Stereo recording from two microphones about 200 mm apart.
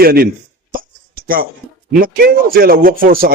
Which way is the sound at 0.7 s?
45° right (ahead or behind).